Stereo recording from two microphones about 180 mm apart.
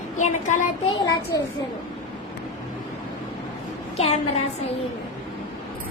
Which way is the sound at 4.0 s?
35° left (ahead or behind).